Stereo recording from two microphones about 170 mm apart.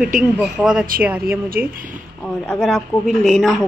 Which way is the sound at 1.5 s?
60° right (ahead or behind).